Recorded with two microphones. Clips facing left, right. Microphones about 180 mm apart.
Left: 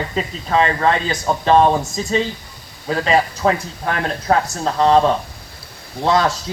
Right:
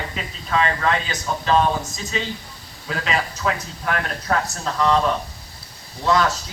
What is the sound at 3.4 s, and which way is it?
Speech, 35° left (ahead or behind).